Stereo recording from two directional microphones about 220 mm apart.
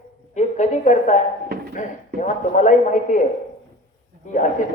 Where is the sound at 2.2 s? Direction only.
35° left (ahead or behind).